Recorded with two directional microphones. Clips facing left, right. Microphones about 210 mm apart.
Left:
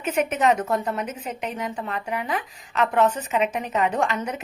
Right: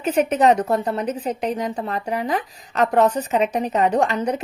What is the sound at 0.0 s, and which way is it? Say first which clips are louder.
A woman's voice: right 5 dB; 35° right (ahead or behind).